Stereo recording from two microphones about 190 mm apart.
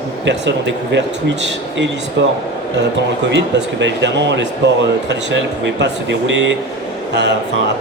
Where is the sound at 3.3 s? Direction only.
65° right (ahead or behind).